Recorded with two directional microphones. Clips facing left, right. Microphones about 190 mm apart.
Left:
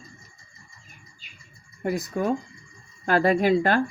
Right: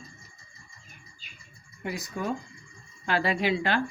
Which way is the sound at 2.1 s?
45° left (ahead or behind).